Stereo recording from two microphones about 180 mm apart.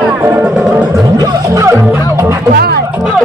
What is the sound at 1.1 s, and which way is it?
Music, 20° right (ahead or behind).